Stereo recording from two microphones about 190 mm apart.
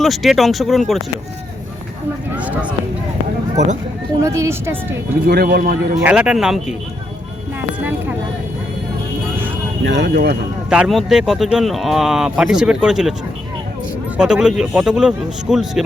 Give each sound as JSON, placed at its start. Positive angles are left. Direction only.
{"t": 0.0, "sound": "speech", "side_deg": 0}
{"t": 2.3, "sound": "a woman's voice", "side_deg": -10}
{"t": 4.2, "sound": "a woman's voice", "side_deg": -15}
{"t": 5.2, "sound": "a man's voice", "side_deg": -50}
{"t": 6.0, "sound": "speech", "side_deg": -5}
{"t": 7.8, "sound": "vehicle", "side_deg": -10}
{"t": 9.8, "sound": "speech", "side_deg": -65}
{"t": 10.7, "sound": "speech", "side_deg": -5}
{"t": 14.2, "sound": "speech", "side_deg": -5}